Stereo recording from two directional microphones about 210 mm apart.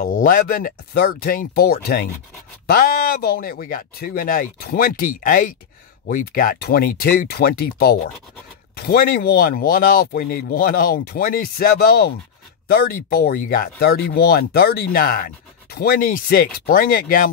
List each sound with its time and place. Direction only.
0.0 s speech: 40° left (ahead or behind)